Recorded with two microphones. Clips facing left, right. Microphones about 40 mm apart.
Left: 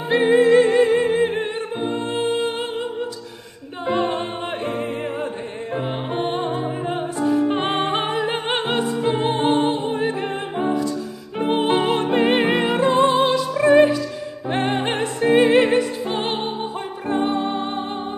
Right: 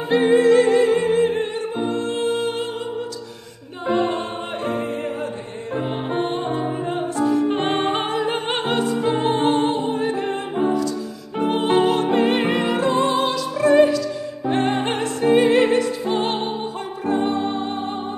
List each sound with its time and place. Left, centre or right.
0.1 s music: centre
3.8 s a capella: centre
5.8 s music: centre
17.0 s music: centre